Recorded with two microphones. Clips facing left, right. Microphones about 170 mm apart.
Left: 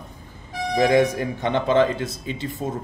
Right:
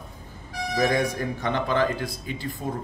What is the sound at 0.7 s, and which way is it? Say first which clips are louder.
Speech: left 6 dB; 25° left (ahead or behind).